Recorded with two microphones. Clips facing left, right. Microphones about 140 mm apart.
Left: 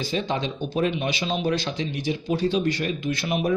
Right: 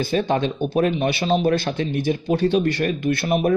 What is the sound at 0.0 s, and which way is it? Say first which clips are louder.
Speech: right 6 dB; 55° right (ahead or behind).